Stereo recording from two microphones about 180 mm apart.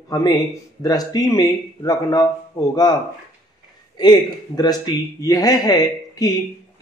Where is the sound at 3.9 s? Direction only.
25° left (ahead or behind).